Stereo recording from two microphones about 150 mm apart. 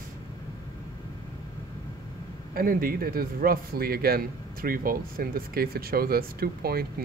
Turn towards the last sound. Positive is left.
turn(degrees=-90)